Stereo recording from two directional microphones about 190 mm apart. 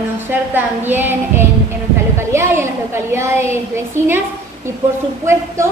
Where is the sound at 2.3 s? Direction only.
15° right (ahead or behind).